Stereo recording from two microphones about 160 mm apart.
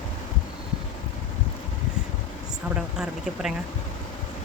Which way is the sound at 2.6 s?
5° right (ahead or behind).